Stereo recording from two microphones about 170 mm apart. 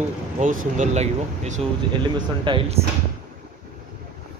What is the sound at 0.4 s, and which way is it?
Speech, 50° right (ahead or behind).